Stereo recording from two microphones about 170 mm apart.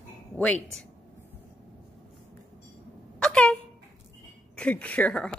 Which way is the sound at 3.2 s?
5° left (ahead or behind).